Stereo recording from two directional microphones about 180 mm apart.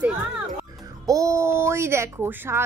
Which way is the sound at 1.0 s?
20° right (ahead or behind).